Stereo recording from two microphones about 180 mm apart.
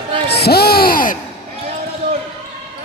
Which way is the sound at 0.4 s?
60° left (ahead or behind).